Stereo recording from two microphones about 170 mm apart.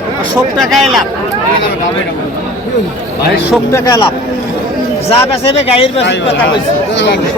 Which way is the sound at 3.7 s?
20° left (ahead or behind).